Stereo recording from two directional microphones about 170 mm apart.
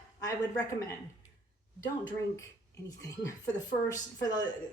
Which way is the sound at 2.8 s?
20° left (ahead or behind).